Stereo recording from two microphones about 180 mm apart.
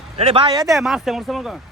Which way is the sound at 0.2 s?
30° right (ahead or behind).